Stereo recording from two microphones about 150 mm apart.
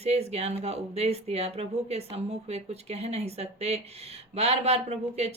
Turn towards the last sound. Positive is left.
turn(degrees=-45)  # may be behind; listen again after turning